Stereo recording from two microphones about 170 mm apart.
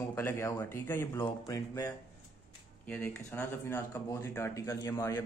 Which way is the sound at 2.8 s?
10° left (ahead or behind).